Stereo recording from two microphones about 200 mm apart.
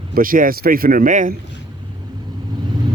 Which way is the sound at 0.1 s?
45° right (ahead or behind).